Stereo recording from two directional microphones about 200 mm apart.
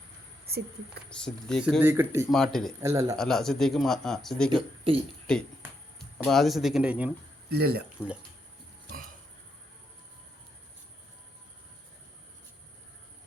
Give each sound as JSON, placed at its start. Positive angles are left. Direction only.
{"t": 0.5, "sound": "a sound", "side_deg": -50}
{"t": 1.1, "sound": "speech", "side_deg": 5}
{"t": 1.8, "sound": "speech", "side_deg": -10}
{"t": 2.3, "sound": "speech", "side_deg": 0}
{"t": 2.8, "sound": "speech", "side_deg": -15}
{"t": 3.2, "sound": "speech", "side_deg": 0}
{"t": 7.5, "sound": "speech", "side_deg": -55}